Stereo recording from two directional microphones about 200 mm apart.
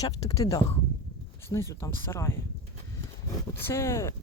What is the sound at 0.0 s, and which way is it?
Speech, 15° left (ahead or behind).